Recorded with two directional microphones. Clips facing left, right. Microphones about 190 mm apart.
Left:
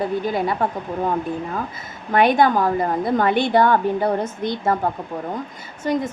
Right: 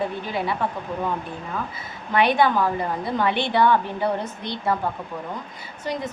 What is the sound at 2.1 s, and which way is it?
A woman's voice, 45° left (ahead or behind).